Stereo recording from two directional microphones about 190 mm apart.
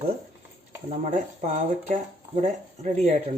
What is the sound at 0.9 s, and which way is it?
Speech, 35° right (ahead or behind).